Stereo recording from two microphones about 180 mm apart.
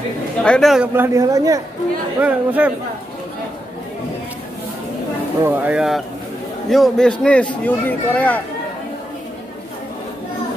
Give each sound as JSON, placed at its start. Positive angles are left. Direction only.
{"t": 0.4, "sound": "speech", "side_deg": 5}
{"t": 0.9, "sound": "speech", "side_deg": -15}
{"t": 2.2, "sound": "speech", "side_deg": -10}
{"t": 5.4, "sound": "speech", "side_deg": -10}